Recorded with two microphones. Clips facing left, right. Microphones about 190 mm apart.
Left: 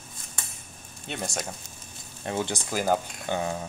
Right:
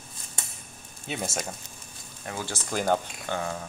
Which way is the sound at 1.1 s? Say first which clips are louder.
Right 1 dB; centre (ahead or behind).